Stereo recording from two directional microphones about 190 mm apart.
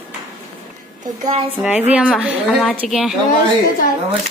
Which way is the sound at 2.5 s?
5° left (ahead or behind).